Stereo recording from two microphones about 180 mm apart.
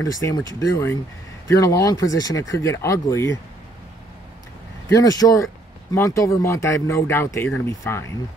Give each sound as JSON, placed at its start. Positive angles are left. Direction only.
{"t": 0.0, "sound": "speech", "side_deg": 15}
{"t": 4.8, "sound": "speech", "side_deg": 20}